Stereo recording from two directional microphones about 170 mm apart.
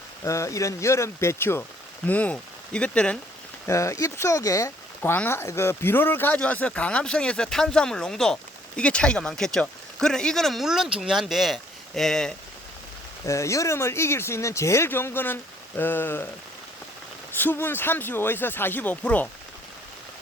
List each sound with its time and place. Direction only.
0.3 s speech: 20° left (ahead or behind)
3.7 s speech: 20° left (ahead or behind)
13.2 s speech: 20° left (ahead or behind)
17.3 s speech: 10° left (ahead or behind)